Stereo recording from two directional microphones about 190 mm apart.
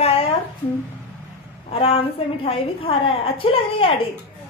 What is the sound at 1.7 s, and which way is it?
A woman's voice, 30° left (ahead or behind).